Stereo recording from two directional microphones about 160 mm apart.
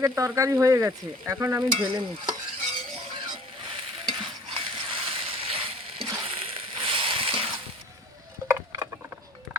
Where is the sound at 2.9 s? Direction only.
35° right (ahead or behind).